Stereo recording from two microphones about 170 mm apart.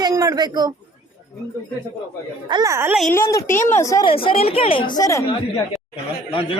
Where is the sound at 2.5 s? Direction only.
20° right (ahead or behind).